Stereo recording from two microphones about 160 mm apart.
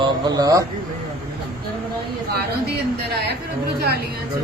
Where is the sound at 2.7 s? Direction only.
80° right.